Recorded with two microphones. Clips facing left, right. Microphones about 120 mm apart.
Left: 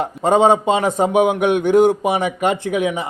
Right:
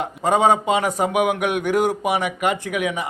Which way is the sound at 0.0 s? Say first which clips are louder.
Left 4 dB; 30° left (ahead or behind).